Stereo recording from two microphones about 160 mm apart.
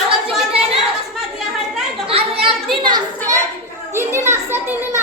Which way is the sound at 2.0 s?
35° right (ahead or behind).